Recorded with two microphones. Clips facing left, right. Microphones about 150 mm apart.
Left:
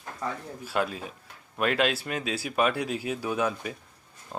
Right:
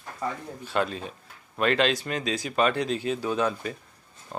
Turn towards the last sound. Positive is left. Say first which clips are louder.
# right 1 dB
turn(degrees=-10)  # may be behind; listen again after turning